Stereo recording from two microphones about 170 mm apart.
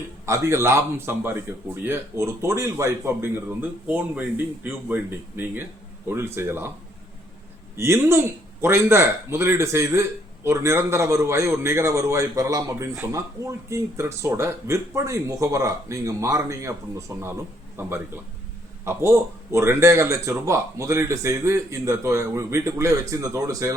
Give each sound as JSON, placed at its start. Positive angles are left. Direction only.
{"t": 0.3, "sound": "a man's voice", "side_deg": -15}
{"t": 7.8, "sound": "a man's voice", "side_deg": -15}